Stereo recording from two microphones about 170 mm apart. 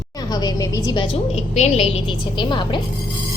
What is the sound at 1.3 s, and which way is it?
A woman's voice, 40° left (ahead or behind).